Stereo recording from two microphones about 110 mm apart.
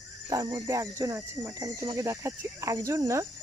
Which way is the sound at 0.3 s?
30° right (ahead or behind).